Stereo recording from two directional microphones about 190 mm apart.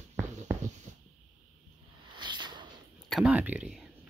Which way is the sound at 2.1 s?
25° right (ahead or behind).